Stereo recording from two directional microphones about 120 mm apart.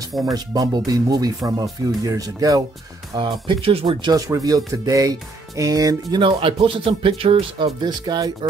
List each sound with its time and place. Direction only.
0.2 s speech: 30° right (ahead or behind)
3.2 s speech: 50° right (ahead or behind)
4.3 s speech: 30° right (ahead or behind)
6.2 s speech: 45° right (ahead or behind)
7.8 s speech: 35° right (ahead or behind)